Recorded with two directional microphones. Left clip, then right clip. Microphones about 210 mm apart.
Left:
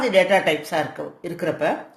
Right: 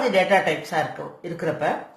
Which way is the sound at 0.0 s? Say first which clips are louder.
Left 2 dB; 45° left (ahead or behind).